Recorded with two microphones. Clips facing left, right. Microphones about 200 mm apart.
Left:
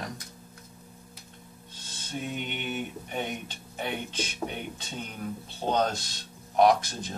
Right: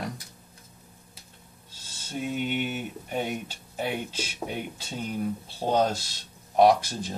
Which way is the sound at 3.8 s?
5° right (ahead or behind).